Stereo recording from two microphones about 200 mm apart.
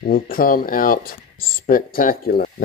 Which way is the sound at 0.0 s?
45° left (ahead or behind).